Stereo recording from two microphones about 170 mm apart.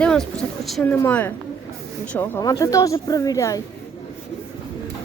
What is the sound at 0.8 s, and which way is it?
A woman's voice, 10° left (ahead or behind).